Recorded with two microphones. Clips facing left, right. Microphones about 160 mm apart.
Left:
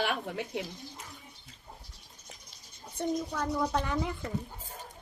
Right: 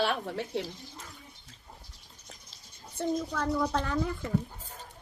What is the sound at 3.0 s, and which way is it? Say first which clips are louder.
Speech: right 1 dB; 15° left (ahead or behind).